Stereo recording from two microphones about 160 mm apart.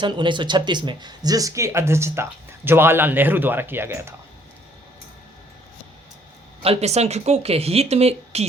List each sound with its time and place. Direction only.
0.0 s speech: 30° right (ahead or behind)
6.6 s speech: 40° right (ahead or behind)